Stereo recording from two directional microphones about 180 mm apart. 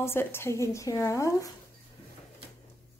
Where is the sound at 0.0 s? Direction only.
15° left (ahead or behind).